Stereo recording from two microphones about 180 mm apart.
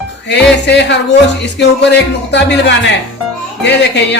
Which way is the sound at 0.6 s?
70° left (ahead or behind).